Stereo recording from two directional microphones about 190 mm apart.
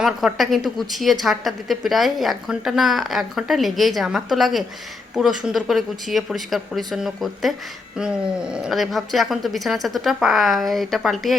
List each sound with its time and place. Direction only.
0.0 s a woman's voice: centre (ahead or behind)